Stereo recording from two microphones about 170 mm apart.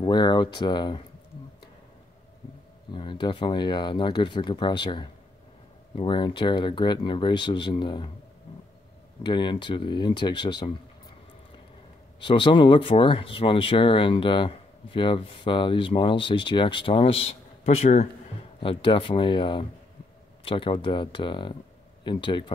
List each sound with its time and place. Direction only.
0.0 s speech: 25° left (ahead or behind)
2.9 s speech: 25° left (ahead or behind)
9.2 s speech: 25° left (ahead or behind)
12.2 s speech: 30° left (ahead or behind)